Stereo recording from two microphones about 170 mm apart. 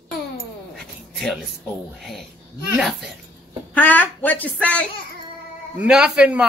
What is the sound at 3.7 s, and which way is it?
Speech, 10° left (ahead or behind).